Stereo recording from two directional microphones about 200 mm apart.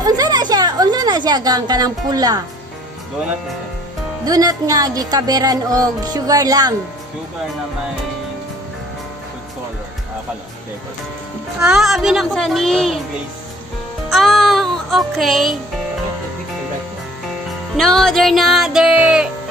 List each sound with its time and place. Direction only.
0.0 s a sound: 20° right (ahead or behind)
4.2 s speech: 20° right (ahead or behind)
11.6 s music: centre (ahead or behind)
14.1 s music: centre (ahead or behind)
17.5 s music: centre (ahead or behind)